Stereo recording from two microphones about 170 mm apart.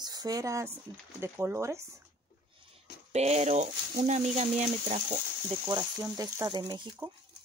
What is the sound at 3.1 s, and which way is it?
Speech, 40° right (ahead or behind).